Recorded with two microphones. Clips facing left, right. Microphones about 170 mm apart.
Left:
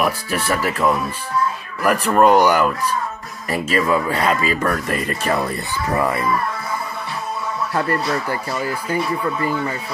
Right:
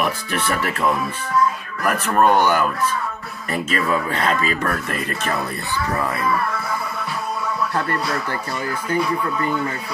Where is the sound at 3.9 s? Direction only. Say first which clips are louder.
Left 1 dB; 5° left (ahead or behind).